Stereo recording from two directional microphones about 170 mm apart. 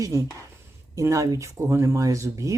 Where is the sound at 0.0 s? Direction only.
20° right (ahead or behind).